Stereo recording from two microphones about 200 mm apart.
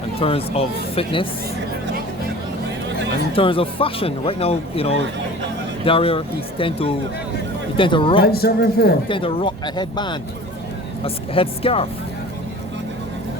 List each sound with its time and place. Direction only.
0.2 s speech: 30° left (ahead or behind)
3.3 s speech: 25° left (ahead or behind)
8.2 s a man's voice: 50° left (ahead or behind)
9.0 s speech: 25° left (ahead or behind)